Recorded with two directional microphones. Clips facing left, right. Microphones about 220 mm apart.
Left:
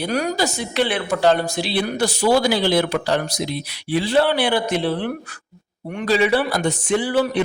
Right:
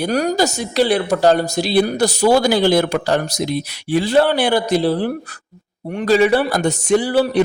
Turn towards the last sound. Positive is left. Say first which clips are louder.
# right 4 dB
turn(degrees=-35)  # may be behind; listen again after turning